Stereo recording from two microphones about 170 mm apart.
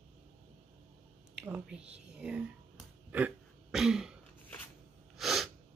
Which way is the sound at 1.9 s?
5° right (ahead or behind).